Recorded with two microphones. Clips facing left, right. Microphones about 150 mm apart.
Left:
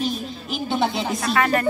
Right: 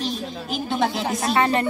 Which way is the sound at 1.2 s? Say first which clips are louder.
Right 1 dB; 25° right (ahead or behind).